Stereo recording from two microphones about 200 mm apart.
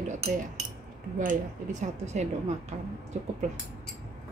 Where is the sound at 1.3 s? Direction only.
35° right (ahead or behind).